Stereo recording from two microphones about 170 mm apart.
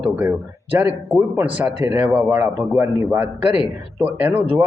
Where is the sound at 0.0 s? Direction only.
10° right (ahead or behind).